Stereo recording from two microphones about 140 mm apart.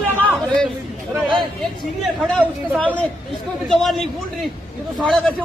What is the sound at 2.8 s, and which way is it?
A woman's voice, 10° left (ahead or behind).